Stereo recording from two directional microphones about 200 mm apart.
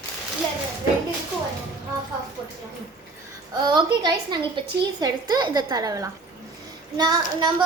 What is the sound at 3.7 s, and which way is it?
A woman's voice, 20° right (ahead or behind).